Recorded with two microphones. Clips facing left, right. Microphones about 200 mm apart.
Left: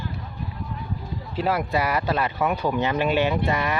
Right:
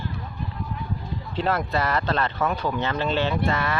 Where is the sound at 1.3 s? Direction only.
10° left (ahead or behind).